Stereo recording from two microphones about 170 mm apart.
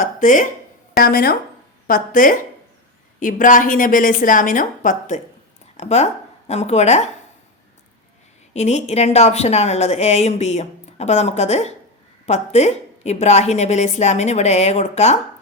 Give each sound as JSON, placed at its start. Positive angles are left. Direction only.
{"t": 0.0, "sound": "speech", "side_deg": 50}
{"t": 0.9, "sound": "a woman's voice", "side_deg": 65}
{"t": 8.5, "sound": "speech", "side_deg": 40}